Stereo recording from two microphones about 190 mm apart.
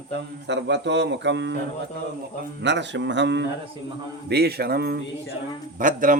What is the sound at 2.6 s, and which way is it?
Mantra, 70° right (ahead or behind).